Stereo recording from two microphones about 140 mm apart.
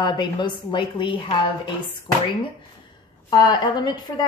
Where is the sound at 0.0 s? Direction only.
35° left (ahead or behind).